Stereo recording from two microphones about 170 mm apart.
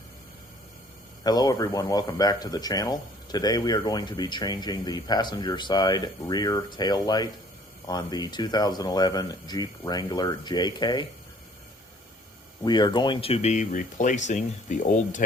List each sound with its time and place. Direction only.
1.2 s speech: 25° left (ahead or behind)
12.6 s speech: 25° left (ahead or behind); by 15.2 s 45° left (ahead or behind)